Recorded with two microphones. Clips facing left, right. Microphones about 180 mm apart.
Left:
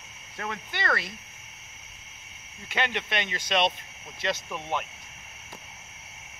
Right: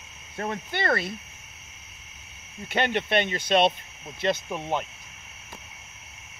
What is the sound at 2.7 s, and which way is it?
Speech, 55° right (ahead or behind).